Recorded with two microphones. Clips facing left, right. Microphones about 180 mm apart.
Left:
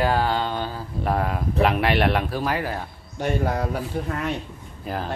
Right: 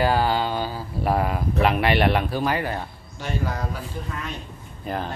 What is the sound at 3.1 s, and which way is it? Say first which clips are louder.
Speech: left 5 dB; 55° left (ahead or behind).